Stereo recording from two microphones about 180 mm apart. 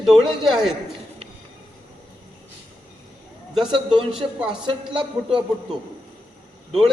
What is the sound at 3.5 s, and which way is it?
Speech, centre (ahead or behind).